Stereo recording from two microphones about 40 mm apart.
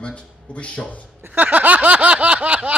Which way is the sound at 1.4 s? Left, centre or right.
Right.